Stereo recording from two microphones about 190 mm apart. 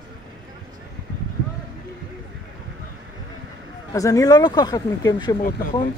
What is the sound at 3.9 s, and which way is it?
A woman's voice, 20° left (ahead or behind).